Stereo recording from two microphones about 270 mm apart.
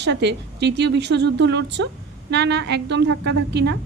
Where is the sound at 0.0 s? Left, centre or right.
Right.